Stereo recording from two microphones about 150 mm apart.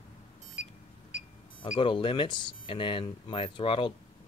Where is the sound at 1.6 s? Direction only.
35° left (ahead or behind).